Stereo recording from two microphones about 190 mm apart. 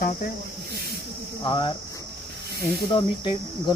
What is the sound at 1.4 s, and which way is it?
Speech, 25° left (ahead or behind).